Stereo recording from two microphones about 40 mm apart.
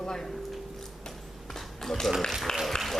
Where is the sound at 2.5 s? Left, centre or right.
Centre.